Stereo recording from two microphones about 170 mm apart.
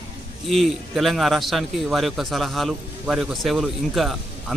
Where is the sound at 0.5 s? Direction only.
Centre (ahead or behind).